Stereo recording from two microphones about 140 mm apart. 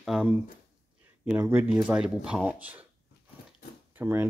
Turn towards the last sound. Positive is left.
turn(degrees=-15)  # may be behind; listen again after turning